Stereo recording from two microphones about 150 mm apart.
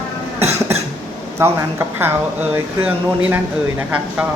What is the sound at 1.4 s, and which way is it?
Speech, 15° right (ahead or behind).